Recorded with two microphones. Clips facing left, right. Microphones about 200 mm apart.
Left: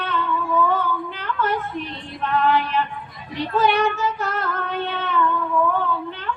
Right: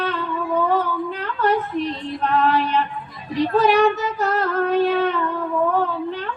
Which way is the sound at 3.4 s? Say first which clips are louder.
Right 4 dB; 35° right (ahead or behind).